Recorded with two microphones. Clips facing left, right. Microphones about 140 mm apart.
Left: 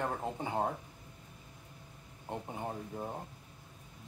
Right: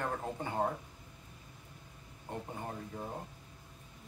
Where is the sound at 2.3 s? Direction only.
20° left (ahead or behind).